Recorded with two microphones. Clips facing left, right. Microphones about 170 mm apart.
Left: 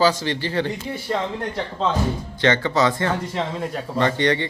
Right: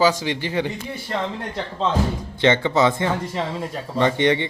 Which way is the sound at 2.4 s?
20° right (ahead or behind).